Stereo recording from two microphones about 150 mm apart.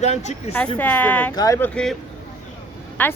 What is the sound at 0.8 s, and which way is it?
A woman's voice, 10° left (ahead or behind).